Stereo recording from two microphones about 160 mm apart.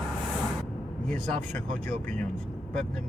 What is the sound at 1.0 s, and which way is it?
A man's voice, 10° left (ahead or behind).